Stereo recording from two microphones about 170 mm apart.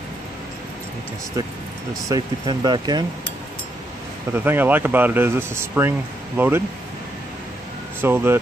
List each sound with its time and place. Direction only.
2.0 s speech: 25° right (ahead or behind)
4.3 s speech: 10° right (ahead or behind)
8.0 s speech: 15° right (ahead or behind)